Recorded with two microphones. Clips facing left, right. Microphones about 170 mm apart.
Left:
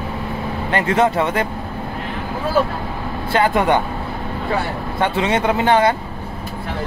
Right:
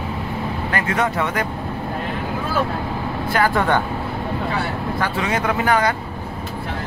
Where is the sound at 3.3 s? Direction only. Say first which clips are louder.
Left 3 dB; 25° left (ahead or behind).